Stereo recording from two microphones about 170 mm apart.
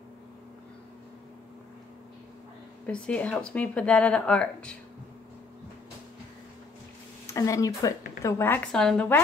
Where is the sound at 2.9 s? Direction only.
5° left (ahead or behind).